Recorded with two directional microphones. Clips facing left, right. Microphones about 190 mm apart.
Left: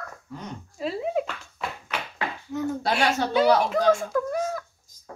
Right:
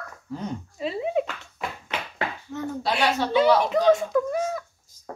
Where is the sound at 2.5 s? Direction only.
15° left (ahead or behind).